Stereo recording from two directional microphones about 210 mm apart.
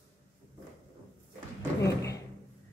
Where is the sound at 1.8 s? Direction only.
15° left (ahead or behind).